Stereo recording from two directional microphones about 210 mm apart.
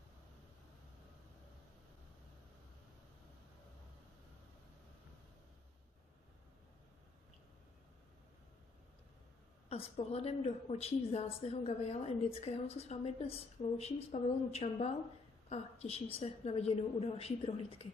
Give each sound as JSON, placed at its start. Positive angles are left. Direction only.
{"t": 9.7, "sound": "a woman's voice", "side_deg": 30}